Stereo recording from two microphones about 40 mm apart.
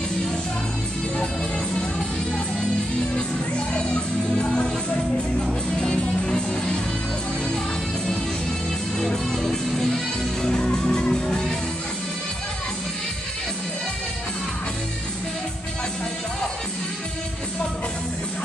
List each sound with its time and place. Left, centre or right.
3.2 s music: left
5.8 s music: left
9.0 s music: centre